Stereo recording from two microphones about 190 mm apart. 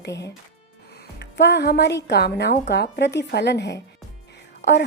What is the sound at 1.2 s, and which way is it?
Speech, 65° left (ahead or behind).